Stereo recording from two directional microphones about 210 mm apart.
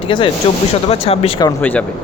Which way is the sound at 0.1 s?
20° left (ahead or behind).